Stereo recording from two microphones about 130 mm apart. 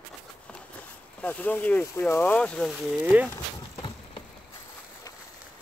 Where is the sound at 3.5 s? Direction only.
40° left (ahead or behind).